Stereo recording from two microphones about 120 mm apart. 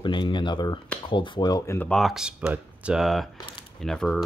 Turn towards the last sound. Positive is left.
turn(degrees=5)  # may be behind; listen again after turning